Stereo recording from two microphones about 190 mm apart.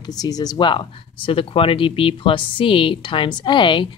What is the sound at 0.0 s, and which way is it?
Speech, 20° left (ahead or behind).